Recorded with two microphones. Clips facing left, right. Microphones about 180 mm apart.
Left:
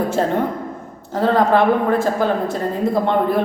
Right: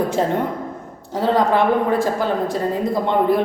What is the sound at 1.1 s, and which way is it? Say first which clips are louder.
A woman's voice: left 2 dB; 15° right (ahead or behind).